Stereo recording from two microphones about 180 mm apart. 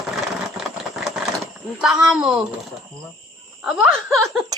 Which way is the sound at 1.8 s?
5° right (ahead or behind).